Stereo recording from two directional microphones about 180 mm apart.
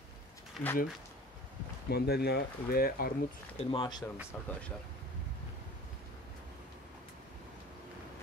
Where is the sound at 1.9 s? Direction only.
60° left (ahead or behind).